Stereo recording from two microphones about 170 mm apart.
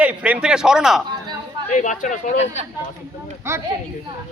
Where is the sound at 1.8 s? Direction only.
50° left (ahead or behind).